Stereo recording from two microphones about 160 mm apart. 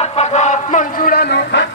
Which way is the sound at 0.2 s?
45° left (ahead or behind).